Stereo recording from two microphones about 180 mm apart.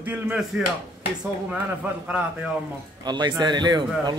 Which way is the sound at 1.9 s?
10° right (ahead or behind).